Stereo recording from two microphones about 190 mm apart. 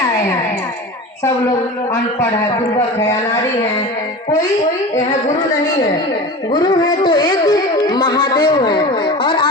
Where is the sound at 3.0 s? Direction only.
15° left (ahead or behind).